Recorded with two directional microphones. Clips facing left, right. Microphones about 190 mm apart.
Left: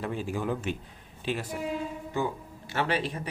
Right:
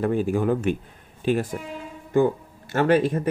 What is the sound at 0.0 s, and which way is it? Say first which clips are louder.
Speech: right 9 dB; 50° right (ahead or behind).